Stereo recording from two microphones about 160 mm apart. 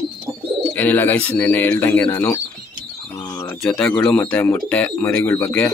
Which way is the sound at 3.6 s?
5° left (ahead or behind).